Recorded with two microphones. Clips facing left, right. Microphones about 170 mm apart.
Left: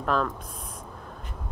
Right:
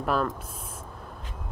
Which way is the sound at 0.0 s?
5° right (ahead or behind).